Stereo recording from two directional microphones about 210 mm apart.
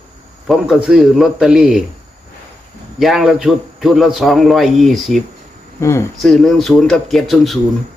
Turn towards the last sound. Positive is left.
turn(degrees=0)  # may be behind; listen again after turning